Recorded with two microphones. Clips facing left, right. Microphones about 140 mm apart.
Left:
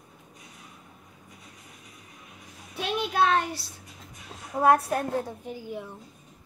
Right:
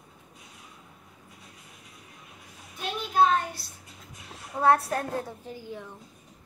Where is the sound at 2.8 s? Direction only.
80° left.